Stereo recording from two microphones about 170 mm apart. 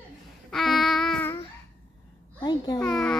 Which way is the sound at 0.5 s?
Centre (ahead or behind).